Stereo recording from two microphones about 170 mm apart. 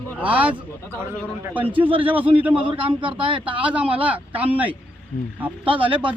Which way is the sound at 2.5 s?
30° right (ahead or behind).